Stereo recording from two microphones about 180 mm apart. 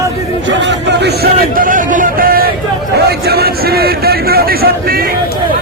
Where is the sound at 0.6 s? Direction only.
75° right (ahead or behind).